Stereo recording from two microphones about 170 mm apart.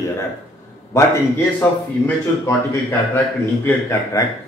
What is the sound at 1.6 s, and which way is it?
A man's voice, 15° left (ahead or behind).